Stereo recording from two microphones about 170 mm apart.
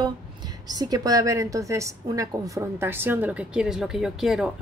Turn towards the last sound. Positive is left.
turn(degrees=-5)  # may be behind; listen again after turning